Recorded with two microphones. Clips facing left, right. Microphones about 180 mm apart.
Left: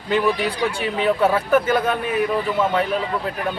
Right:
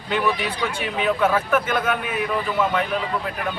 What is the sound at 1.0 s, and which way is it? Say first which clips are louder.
Speech: left 2 dB; 30° left (ahead or behind).